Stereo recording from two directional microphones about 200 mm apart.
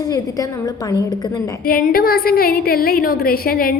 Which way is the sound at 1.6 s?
45° left (ahead or behind).